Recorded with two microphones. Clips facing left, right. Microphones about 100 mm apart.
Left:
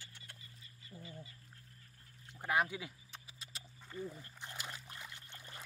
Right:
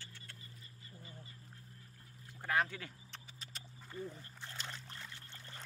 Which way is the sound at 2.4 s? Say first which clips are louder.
Left 1 dB; 15° left (ahead or behind).